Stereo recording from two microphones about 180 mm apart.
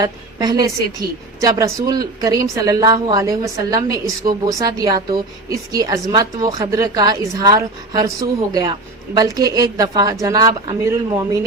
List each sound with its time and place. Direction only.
0.0 s a woman's voice: 20° right (ahead or behind)